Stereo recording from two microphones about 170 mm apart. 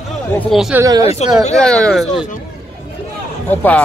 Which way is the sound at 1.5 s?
5° left (ahead or behind).